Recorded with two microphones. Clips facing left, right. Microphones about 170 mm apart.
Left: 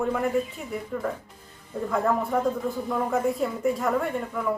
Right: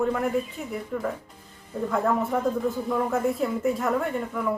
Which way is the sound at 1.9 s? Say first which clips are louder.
Even; centre (ahead or behind).